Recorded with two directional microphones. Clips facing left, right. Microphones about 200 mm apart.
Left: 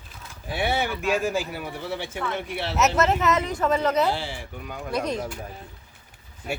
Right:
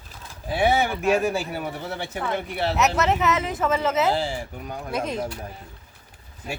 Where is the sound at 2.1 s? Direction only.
40° right (ahead or behind).